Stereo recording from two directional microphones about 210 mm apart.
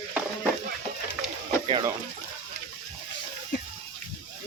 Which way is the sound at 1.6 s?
25° right (ahead or behind).